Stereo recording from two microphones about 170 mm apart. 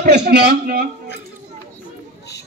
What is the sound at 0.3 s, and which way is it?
Speech, 70° right (ahead or behind).